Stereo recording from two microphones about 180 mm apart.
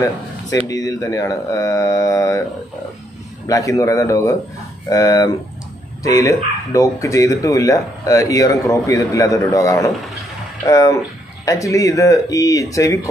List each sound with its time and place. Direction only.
0.7 s speech: 20° left (ahead or behind)
3.4 s speech: 20° left (ahead or behind)